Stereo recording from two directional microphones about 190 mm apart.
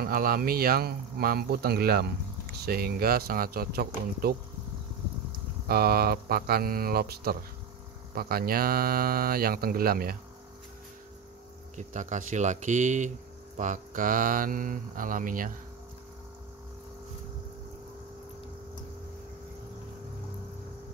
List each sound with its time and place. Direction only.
0.0 s speech: 50° right (ahead or behind)
5.7 s speech: 55° right (ahead or behind)
11.7 s speech: 40° right (ahead or behind)